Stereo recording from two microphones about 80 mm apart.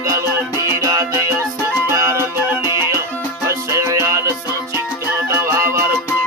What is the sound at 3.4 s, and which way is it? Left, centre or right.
Music, right.